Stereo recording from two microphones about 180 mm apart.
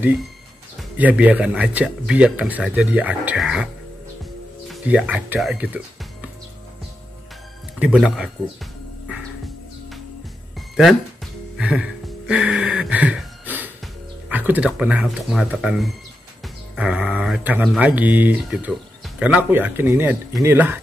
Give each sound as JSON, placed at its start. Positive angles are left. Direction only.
{"t": 0.9, "sound": "speech", "side_deg": -10}
{"t": 4.6, "sound": "speech", "side_deg": -5}
{"t": 7.8, "sound": "speech", "side_deg": -5}
{"t": 11.5, "sound": "a sound", "side_deg": -5}
{"t": 14.3, "sound": "speech", "side_deg": -10}